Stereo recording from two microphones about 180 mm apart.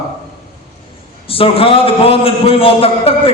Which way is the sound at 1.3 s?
30° left (ahead or behind).